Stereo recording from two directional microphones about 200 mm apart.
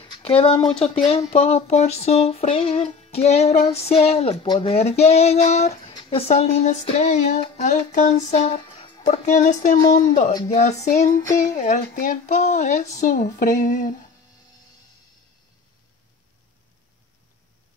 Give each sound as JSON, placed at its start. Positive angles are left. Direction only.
{"t": 0.0, "sound": "speech", "side_deg": 25}
{"t": 9.8, "sound": "music", "side_deg": 20}
{"t": 10.5, "sound": "speech", "side_deg": 35}
{"t": 11.1, "sound": "music", "side_deg": 15}
{"t": 11.5, "sound": "speech", "side_deg": 40}